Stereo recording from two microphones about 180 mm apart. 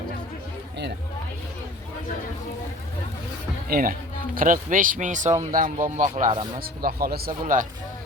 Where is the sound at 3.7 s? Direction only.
55° right (ahead or behind).